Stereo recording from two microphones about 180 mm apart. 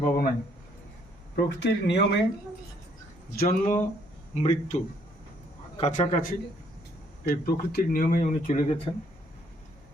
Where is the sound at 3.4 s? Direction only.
50° left (ahead or behind).